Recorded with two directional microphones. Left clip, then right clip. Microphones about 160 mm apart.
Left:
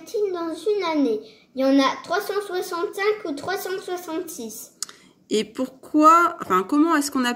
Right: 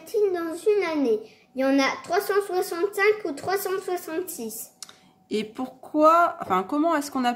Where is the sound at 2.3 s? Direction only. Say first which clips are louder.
Right 2 dB; 35° right (ahead or behind).